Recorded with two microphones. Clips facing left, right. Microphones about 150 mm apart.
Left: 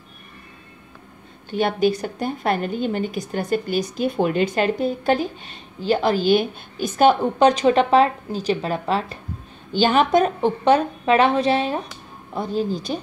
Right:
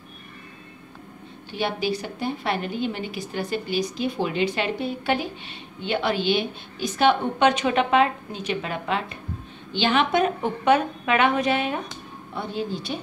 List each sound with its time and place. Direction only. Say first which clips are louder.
1.5 s a woman's voice: left 6 dB; 50° left (ahead or behind)